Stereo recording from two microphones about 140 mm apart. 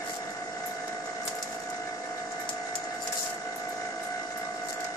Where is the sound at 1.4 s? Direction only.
20° left (ahead or behind).